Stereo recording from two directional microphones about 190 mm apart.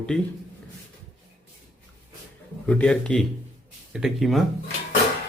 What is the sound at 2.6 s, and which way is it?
Speech, 5° left (ahead or behind).